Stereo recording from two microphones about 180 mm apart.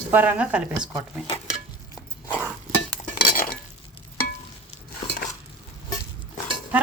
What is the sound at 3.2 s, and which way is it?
Cutlery, 55° left (ahead or behind).